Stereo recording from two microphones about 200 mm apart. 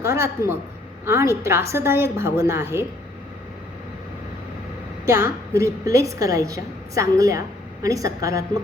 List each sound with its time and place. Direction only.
0.0 s a woman's voice: 15° right (ahead or behind)
5.0 s a woman's voice: 10° right (ahead or behind)